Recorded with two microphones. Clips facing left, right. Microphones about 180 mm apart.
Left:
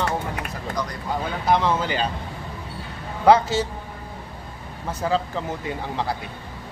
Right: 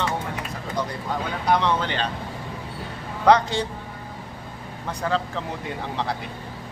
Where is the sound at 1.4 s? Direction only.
5° left (ahead or behind).